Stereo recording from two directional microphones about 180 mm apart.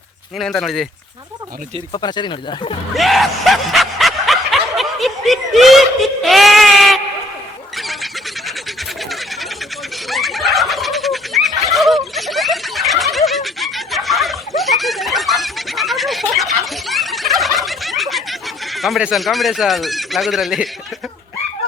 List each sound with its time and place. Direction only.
0.3 s speech: centre (ahead or behind)
1.9 s speech: 25° left (ahead or behind)
2.9 s snicker: centre (ahead or behind)
7.8 s a sound: centre (ahead or behind)
10.1 s turkey: centre (ahead or behind)